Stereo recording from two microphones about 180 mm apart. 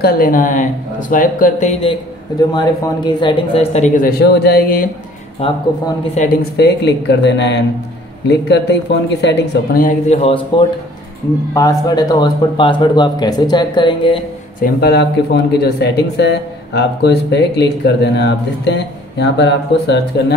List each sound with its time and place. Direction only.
0.0 s a man's voice: 50° left (ahead or behind); by 2.0 s 35° left (ahead or behind)
2.5 s a man's voice: 25° left (ahead or behind); by 4.8 s 55° left (ahead or behind)
5.4 s speech: 30° left (ahead or behind)
6.5 s speech: 70° left (ahead or behind)
9.8 s speech: 40° left (ahead or behind)
14.6 s speech: 65° left (ahead or behind)